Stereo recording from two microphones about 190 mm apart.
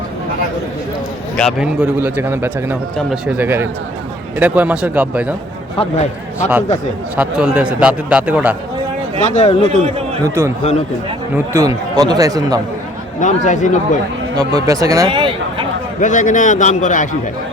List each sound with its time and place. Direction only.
1.4 s a man's voice: centre (ahead or behind)
5.7 s a man's voice: 30° left (ahead or behind)
7.2 s a man's voice: 5° right (ahead or behind)
9.2 s a man's voice: 35° left (ahead or behind)
10.2 s a man's voice: 15° right (ahead or behind)
11.5 s speech: 15° right (ahead or behind)
13.1 s a man's voice: 40° left (ahead or behind)
14.3 s speech: 20° right (ahead or behind)
16.0 s a man's voice: 40° left (ahead or behind)